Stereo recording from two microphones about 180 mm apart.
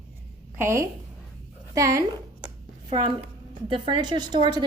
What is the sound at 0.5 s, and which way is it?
A woman's voice, 15° right (ahead or behind).